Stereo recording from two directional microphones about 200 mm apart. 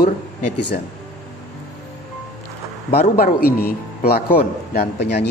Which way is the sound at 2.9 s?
50° left (ahead or behind).